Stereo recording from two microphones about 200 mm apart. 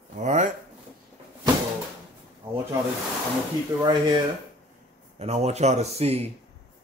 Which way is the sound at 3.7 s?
15° right (ahead or behind).